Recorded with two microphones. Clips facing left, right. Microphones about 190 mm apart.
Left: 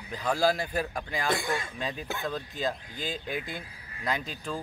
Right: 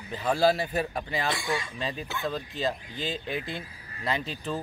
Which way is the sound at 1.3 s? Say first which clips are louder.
Left 1 dB; 50° left (ahead or behind).